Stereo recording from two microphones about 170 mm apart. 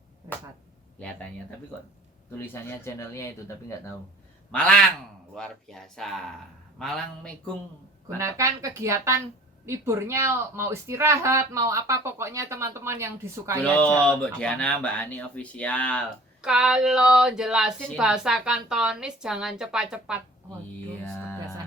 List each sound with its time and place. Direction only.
0.9 s speech: 10° left (ahead or behind)
4.5 s speech: 5° left (ahead or behind)
8.0 s speech: 20° right (ahead or behind)
13.6 s speech: 10° left (ahead or behind)
16.4 s speech: 5° right (ahead or behind)